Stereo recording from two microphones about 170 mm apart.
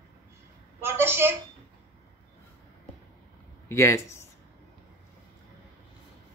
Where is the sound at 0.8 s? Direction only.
15° right (ahead or behind).